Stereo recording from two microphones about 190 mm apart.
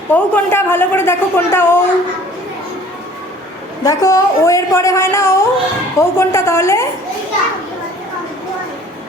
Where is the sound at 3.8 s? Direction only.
15° left (ahead or behind).